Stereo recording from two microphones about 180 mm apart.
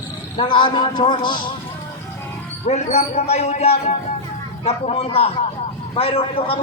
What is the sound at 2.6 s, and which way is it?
A man's voice, 35° left (ahead or behind).